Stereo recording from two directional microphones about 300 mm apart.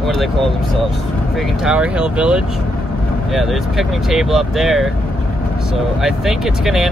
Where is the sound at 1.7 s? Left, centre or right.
Centre.